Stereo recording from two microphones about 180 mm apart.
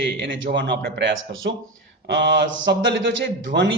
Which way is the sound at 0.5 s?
80° right.